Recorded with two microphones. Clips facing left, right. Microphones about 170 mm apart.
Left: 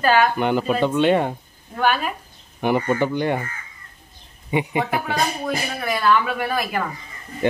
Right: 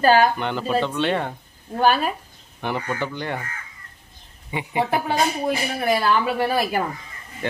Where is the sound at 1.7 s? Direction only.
35° right (ahead or behind).